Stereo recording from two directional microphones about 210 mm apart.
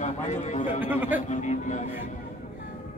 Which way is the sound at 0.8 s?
10° right (ahead or behind).